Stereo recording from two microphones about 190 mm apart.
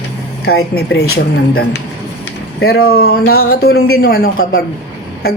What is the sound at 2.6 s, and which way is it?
A man's voice, 60° left (ahead or behind).